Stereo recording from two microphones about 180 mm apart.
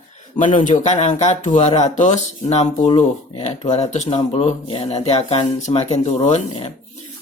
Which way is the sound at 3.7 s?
35° left (ahead or behind).